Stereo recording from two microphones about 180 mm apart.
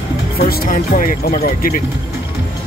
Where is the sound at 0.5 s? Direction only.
50° left (ahead or behind).